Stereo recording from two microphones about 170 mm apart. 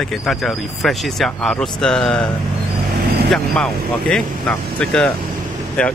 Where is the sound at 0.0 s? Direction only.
5° left (ahead or behind).